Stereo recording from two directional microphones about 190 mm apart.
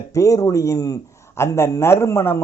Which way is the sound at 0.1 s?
15° left (ahead or behind).